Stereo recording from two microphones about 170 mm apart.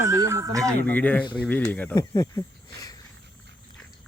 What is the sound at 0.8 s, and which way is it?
Speech, 10° left (ahead or behind).